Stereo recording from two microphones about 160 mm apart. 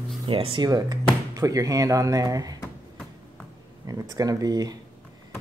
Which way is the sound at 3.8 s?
20° right (ahead or behind).